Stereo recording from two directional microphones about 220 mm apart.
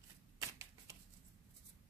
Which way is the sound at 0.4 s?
15° right (ahead or behind).